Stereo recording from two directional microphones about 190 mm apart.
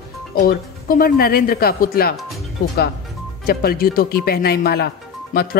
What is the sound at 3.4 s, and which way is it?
Speech, 55° left (ahead or behind).